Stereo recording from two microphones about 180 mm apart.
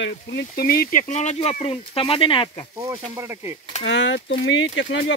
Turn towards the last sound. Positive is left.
turn(degrees=80)